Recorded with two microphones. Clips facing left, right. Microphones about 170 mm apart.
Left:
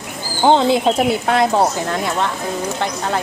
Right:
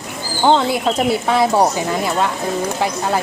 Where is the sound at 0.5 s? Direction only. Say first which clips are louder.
Left 4 dB; 20° left (ahead or behind).